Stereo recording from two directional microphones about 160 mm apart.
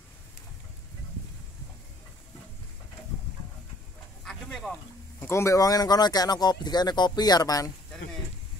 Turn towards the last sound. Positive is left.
turn(degrees=20)  # may be behind; listen again after turning